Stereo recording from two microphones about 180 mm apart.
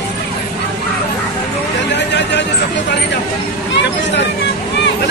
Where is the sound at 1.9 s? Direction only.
75° left (ahead or behind).